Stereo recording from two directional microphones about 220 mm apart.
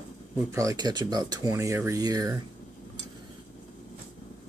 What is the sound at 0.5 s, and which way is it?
Speech, 15° right (ahead or behind).